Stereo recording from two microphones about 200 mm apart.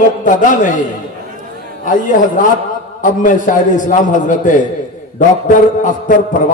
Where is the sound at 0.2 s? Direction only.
40° left (ahead or behind).